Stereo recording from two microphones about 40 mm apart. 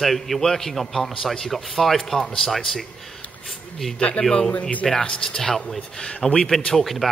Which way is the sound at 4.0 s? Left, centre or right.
Left.